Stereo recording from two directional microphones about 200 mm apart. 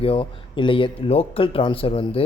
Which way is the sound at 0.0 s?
25° left (ahead or behind).